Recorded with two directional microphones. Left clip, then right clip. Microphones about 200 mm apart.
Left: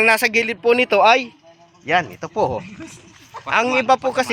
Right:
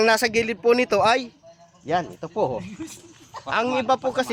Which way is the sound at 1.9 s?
15° left (ahead or behind).